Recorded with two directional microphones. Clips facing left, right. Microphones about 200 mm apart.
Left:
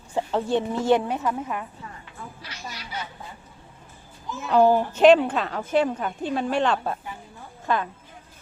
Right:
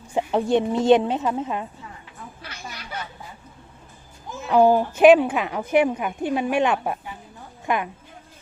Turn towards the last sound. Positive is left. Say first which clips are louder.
# right 1 dB
turn(degrees=-15)  # may be behind; listen again after turning